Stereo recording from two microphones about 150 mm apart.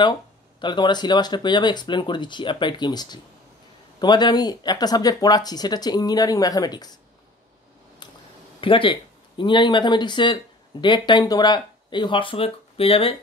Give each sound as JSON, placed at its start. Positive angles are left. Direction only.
{"t": 0.6, "sound": "speech", "side_deg": 30}
{"t": 8.0, "sound": "a sound", "side_deg": 30}
{"t": 8.5, "sound": "speech", "side_deg": 35}